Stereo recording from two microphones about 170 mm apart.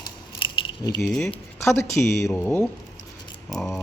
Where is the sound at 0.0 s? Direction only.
30° left (ahead or behind).